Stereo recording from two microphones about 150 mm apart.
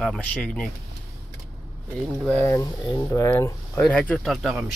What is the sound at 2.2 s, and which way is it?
Speech, 15° left (ahead or behind).